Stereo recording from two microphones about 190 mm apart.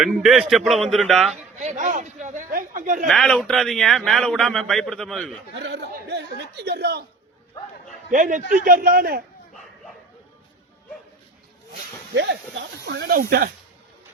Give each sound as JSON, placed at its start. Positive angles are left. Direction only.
{"t": 0.0, "sound": "a man's voice", "side_deg": 0}
{"t": 1.5, "sound": "speech", "side_deg": -40}
{"t": 3.1, "sound": "a man's voice", "side_deg": 0}
{"t": 5.5, "sound": "speech", "side_deg": -65}
{"t": 8.1, "sound": "a man's voice", "side_deg": -40}
{"t": 12.1, "sound": "speech", "side_deg": -60}